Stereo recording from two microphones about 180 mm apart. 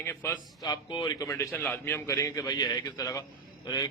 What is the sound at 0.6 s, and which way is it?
A man's voice, 25° left (ahead or behind).